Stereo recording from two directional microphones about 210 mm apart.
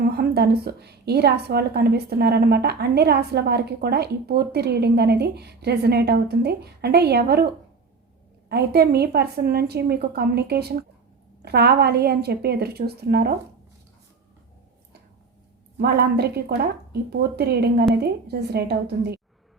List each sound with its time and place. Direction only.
0.0 s a woman's voice: 50° right (ahead or behind)
8.4 s a woman's voice: 50° right (ahead or behind)
15.8 s a woman's voice: 50° right (ahead or behind)